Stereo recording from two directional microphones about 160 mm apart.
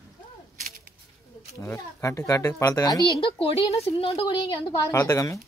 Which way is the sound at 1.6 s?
15° left (ahead or behind).